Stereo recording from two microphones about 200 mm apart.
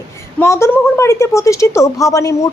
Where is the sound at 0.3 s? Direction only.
15° left (ahead or behind).